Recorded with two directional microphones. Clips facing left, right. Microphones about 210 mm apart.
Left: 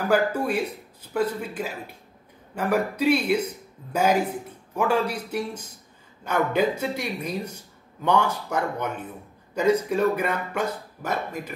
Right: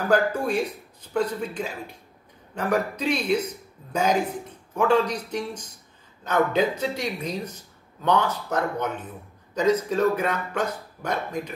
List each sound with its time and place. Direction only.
0.1 s speech: 10° left (ahead or behind)